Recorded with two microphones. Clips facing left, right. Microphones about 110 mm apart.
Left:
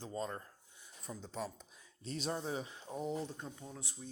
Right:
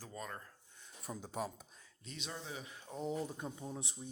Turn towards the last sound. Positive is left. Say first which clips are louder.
# right 3 dB
turn(degrees=-20)  # may be behind; listen again after turning